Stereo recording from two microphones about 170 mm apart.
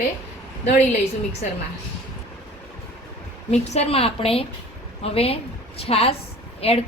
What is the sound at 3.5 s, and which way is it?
A woman's voice, 40° left (ahead or behind).